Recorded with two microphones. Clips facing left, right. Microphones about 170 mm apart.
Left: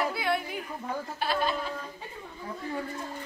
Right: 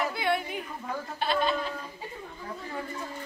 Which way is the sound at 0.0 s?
Centre (ahead or behind).